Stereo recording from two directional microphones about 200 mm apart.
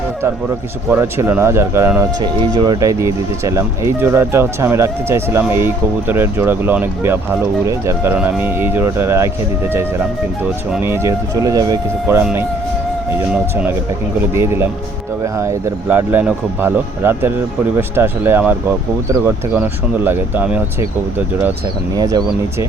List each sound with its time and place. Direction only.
0.9 s speech: 10° right (ahead or behind)
10.4 s speech: 10° right (ahead or behind)
14.3 s speech: 10° right (ahead or behind)
21.9 s speech: 20° right (ahead or behind)